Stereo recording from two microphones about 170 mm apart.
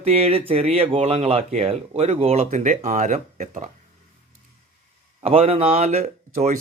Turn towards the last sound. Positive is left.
turn(degrees=-40)  # may be behind; listen again after turning